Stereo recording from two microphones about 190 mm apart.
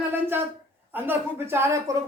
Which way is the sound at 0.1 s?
10° right (ahead or behind).